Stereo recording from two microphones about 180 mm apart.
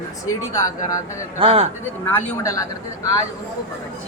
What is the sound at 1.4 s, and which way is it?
Speech, 30° right (ahead or behind).